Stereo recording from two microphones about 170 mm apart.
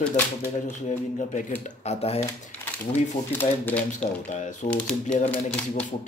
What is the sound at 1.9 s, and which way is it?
Speech, 35° left (ahead or behind).